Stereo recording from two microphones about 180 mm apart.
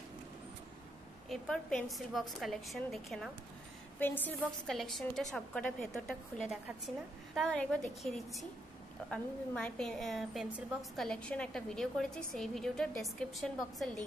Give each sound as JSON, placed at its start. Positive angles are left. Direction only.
{"t": 1.3, "sound": "a woman's voice", "side_deg": 5}
{"t": 4.0, "sound": "a woman's voice", "side_deg": 10}